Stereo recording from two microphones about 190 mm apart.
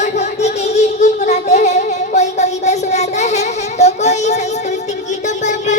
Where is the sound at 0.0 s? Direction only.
35° left (ahead or behind).